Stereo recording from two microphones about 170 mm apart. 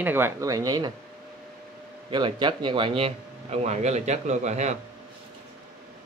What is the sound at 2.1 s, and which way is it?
Speech, 25° right (ahead or behind).